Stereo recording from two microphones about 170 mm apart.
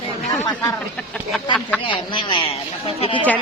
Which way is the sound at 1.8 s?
30° left (ahead or behind).